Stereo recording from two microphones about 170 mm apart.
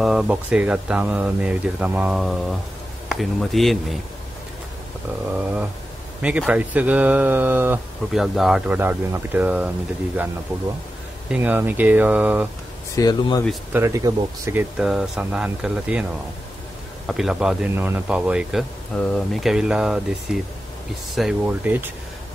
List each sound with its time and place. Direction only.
0.0 s a man's voice: centre (ahead or behind)
5.3 s speech: 10° right (ahead or behind)
11.2 s speech: 10° right (ahead or behind)
12.9 s speech: 20° left (ahead or behind)
13.7 s a man's voice: 15° right (ahead or behind)